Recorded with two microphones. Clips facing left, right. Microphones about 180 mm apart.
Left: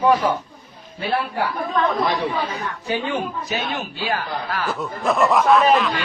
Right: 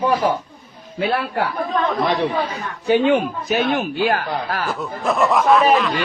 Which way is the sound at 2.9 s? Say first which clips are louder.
Right 9 dB; 65° right (ahead or behind).